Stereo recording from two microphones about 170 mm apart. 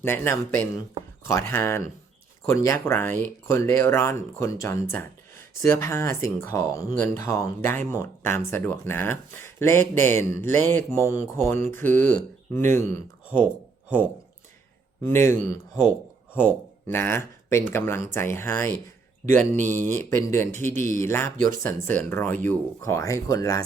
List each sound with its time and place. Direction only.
0.0 s speech: 15° left (ahead or behind)
15.0 s speech: 15° left (ahead or behind)
19.3 s speech: 45° right (ahead or behind)
19.9 s speech: 15° left (ahead or behind)